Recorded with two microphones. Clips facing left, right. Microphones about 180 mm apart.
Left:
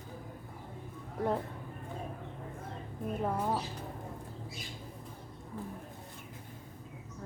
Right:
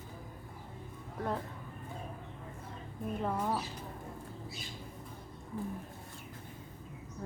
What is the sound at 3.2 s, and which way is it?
Speech, 10° left (ahead or behind).